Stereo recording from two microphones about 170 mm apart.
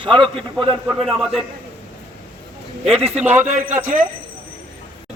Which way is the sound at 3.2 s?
10° right (ahead or behind).